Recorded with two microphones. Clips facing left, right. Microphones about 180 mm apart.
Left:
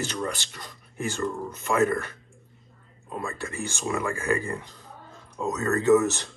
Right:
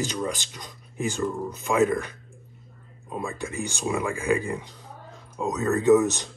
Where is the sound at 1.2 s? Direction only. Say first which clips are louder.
Right 1 dB; centre (ahead or behind).